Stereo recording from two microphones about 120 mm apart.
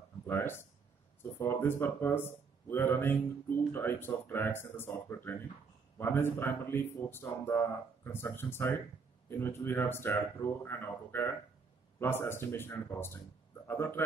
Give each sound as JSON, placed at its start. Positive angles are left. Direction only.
{"t": 0.3, "sound": "speech", "side_deg": 20}